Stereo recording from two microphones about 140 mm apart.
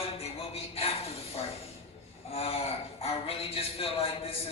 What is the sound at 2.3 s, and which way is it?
A man's voice, 45° left (ahead or behind).